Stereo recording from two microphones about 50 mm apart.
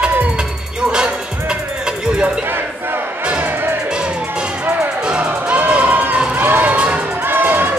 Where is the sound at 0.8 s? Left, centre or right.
Centre.